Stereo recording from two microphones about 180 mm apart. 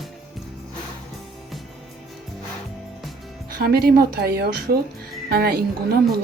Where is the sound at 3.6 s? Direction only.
60° right (ahead or behind).